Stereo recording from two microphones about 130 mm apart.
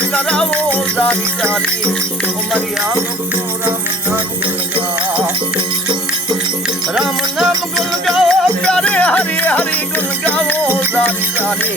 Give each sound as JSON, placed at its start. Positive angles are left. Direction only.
{"t": 0.1, "sound": "music", "side_deg": 5}
{"t": 6.9, "sound": "music", "side_deg": -5}